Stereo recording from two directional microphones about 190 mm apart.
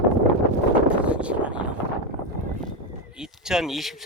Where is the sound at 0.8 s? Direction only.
5° right (ahead or behind).